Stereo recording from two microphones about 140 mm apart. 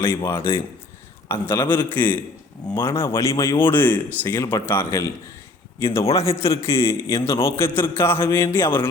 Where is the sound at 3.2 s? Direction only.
20° left (ahead or behind).